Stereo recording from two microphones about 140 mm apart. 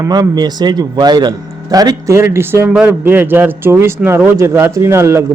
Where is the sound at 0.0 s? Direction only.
25° right (ahead or behind).